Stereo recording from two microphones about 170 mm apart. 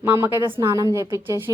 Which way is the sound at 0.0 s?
15° right (ahead or behind).